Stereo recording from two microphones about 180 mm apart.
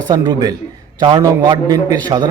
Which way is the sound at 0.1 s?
25° right (ahead or behind).